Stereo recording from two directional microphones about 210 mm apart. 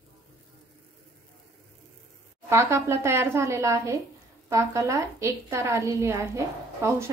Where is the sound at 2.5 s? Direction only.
15° right (ahead or behind).